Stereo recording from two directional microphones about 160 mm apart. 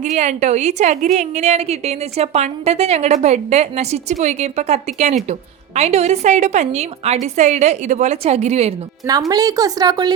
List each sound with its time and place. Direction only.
0.0 s a woman's voice: 45° right (ahead or behind)
9.3 s a woman's voice: 25° right (ahead or behind)